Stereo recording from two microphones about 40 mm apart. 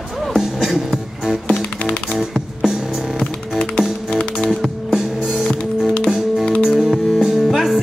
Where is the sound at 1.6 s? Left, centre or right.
Left.